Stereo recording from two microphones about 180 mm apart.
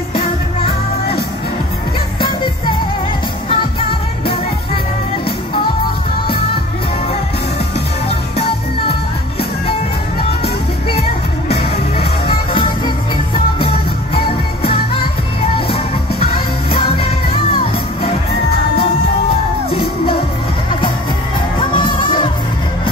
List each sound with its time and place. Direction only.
10.4 s music: 35° left (ahead or behind)
12.5 s music: 25° left (ahead or behind)
16.7 s music: 30° left (ahead or behind)
21.5 s music: 25° left (ahead or behind)